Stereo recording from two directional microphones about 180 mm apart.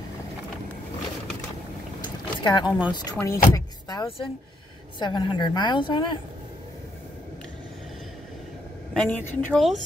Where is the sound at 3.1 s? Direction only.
15° left (ahead or behind).